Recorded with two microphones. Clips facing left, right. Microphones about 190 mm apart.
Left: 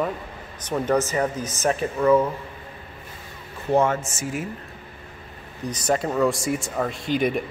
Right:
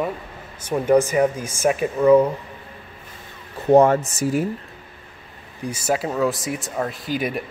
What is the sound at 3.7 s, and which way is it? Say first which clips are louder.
Speech: right 7 dB; 35° right (ahead or behind).